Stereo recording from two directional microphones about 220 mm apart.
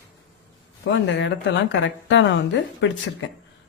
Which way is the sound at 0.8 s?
55° left (ahead or behind).